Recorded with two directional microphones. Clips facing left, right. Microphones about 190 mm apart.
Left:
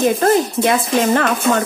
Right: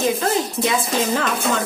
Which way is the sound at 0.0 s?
55° left (ahead or behind).